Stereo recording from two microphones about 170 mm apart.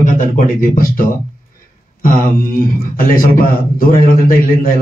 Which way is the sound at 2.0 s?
55° left (ahead or behind).